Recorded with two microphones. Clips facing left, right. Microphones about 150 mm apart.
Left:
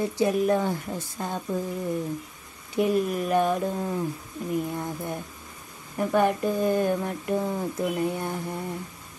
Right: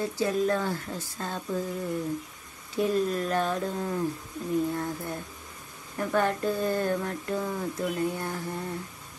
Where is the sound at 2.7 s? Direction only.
15° left (ahead or behind).